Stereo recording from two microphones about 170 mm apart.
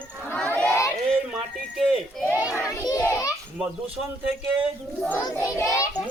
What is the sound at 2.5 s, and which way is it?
Speech, 20° left (ahead or behind).